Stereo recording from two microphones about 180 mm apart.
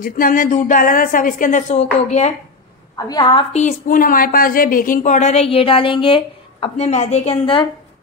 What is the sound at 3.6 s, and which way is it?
A woman's voice, 50° left (ahead or behind).